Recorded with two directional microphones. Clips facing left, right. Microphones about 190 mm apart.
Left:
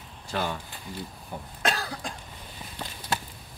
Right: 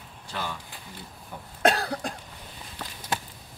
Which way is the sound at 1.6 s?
60° right (ahead or behind).